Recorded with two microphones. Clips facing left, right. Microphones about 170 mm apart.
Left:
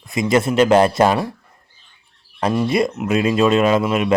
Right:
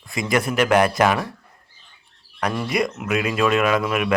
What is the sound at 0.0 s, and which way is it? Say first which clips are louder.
Speech: left 5 dB; 20° left (ahead or behind).